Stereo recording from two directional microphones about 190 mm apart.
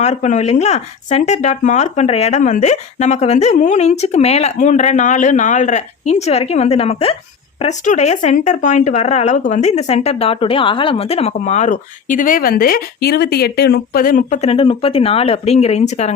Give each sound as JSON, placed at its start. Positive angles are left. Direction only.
{"t": 0.0, "sound": "speech", "side_deg": 35}